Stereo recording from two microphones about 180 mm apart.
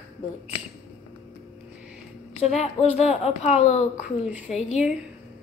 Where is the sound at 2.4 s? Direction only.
35° left (ahead or behind).